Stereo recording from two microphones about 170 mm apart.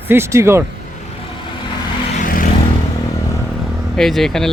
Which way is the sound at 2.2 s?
55° left (ahead or behind).